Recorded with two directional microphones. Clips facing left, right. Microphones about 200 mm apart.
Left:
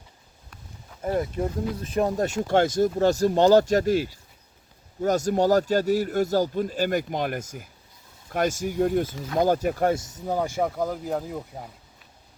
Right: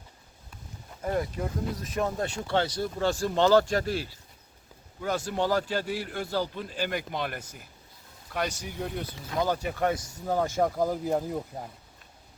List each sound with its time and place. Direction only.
1.8 s a man's voice: 35° left (ahead or behind)
9.9 s speech: 25° left (ahead or behind)
10.2 s speech: 10° left (ahead or behind)
10.8 s speech: centre (ahead or behind)